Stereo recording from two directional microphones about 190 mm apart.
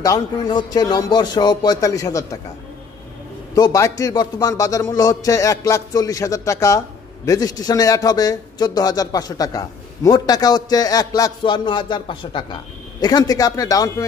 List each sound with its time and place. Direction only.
0.0 s a man's voice: 20° left (ahead or behind)
3.5 s a man's voice: 20° left (ahead or behind)